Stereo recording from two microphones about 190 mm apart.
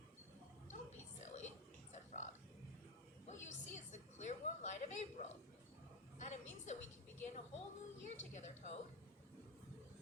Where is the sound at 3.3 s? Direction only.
40° left (ahead or behind).